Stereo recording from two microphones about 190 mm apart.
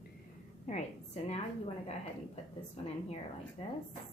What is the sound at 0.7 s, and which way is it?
Speech, 35° left (ahead or behind).